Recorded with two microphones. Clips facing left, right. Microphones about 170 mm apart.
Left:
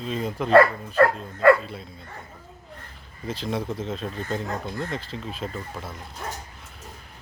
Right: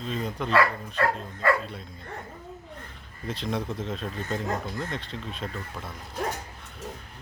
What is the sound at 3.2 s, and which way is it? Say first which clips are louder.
Speech: left 2 dB; centre (ahead or behind).